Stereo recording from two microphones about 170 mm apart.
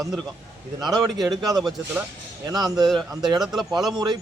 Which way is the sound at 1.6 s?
Centre (ahead or behind).